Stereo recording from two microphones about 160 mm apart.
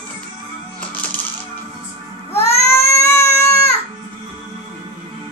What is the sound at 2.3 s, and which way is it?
Baby cry, 15° left (ahead or behind).